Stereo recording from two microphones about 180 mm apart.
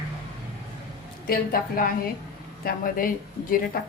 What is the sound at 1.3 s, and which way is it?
A woman's voice, 55° left (ahead or behind).